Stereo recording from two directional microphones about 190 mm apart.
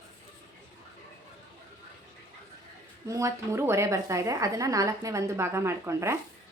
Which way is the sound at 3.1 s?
15° right (ahead or behind).